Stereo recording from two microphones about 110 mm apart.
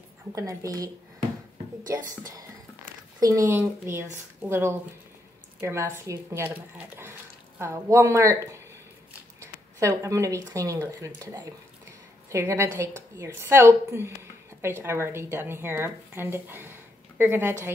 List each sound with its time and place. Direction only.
0.3 s speech: 30° right (ahead or behind)
3.2 s speech: 30° right (ahead or behind); by 7.1 s 15° right (ahead or behind)
7.6 s speech: 30° right (ahead or behind)
9.4 s speech: 30° right (ahead or behind)